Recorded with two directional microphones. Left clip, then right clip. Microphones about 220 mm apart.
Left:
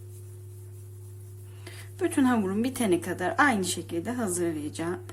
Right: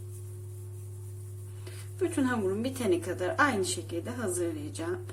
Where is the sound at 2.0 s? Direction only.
40° left (ahead or behind).